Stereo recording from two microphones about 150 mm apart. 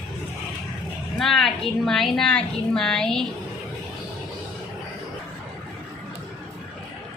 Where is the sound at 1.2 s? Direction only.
Centre (ahead or behind).